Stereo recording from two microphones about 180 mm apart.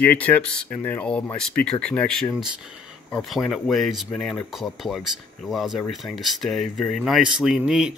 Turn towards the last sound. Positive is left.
turn(degrees=-5)  # may be behind; listen again after turning